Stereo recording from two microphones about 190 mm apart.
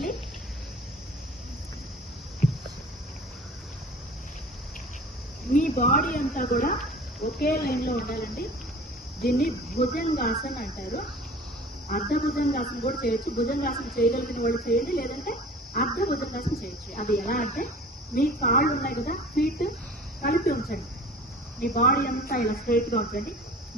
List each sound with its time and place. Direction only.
5.5 s speech: 45° left (ahead or behind)